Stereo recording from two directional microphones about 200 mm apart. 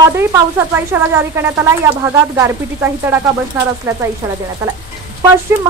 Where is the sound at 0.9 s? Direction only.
10° right (ahead or behind).